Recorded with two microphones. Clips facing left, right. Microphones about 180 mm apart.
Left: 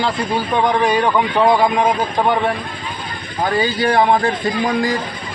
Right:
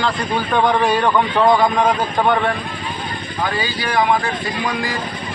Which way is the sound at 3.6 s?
30° left (ahead or behind).